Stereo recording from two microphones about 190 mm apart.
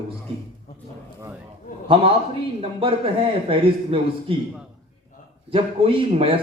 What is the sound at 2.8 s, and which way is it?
A man's voice, 30° right (ahead or behind).